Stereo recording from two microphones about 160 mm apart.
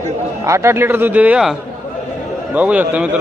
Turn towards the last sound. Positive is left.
turn(degrees=-10)  # may be behind; listen again after turning